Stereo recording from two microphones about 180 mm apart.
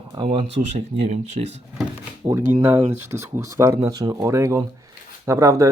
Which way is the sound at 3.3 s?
15° right (ahead or behind).